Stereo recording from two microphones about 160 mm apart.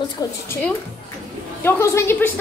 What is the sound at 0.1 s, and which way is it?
Speech, 20° left (ahead or behind).